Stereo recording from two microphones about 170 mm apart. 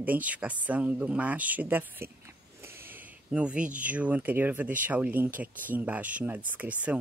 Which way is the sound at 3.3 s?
5° right (ahead or behind).